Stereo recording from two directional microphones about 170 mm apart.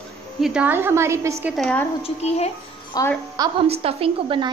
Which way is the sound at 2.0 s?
40° left (ahead or behind).